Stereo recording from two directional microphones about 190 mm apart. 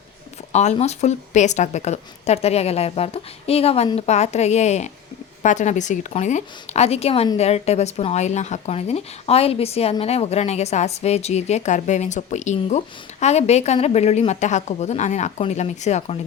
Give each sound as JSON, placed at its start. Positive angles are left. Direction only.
{"t": 0.5, "sound": "a woman's voice", "side_deg": 35}